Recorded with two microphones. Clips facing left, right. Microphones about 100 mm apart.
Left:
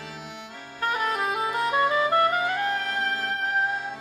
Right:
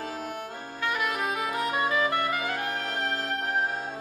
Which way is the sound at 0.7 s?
35° left (ahead or behind).